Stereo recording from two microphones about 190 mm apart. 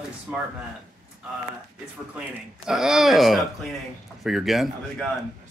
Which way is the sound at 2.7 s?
5° right (ahead or behind).